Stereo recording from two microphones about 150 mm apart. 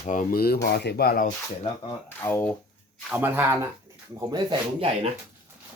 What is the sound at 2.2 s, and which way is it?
Speech, 15° left (ahead or behind).